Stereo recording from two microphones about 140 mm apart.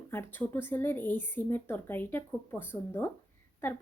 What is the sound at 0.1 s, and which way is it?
Speech, 15° left (ahead or behind).